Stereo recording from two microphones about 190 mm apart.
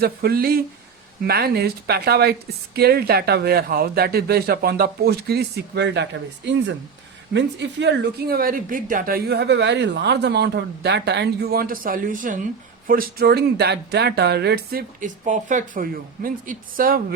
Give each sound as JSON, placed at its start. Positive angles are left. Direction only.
{"t": 0.0, "sound": "a woman's voice", "side_deg": -55}